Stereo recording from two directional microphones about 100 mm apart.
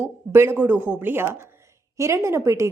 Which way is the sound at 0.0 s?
20° right (ahead or behind).